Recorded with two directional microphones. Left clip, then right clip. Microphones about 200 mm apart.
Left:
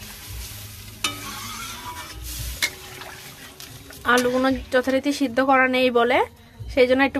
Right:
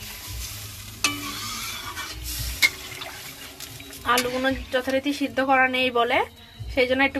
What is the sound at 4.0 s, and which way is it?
Speech, 50° left (ahead or behind).